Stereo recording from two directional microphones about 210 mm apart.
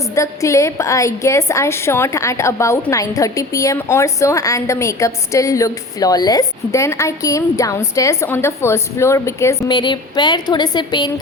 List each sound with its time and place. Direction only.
0.1 s a woman's voice: 15° left (ahead or behind)